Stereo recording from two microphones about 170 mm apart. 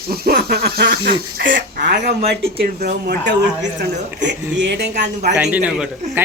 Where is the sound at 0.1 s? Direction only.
65° right (ahead or behind).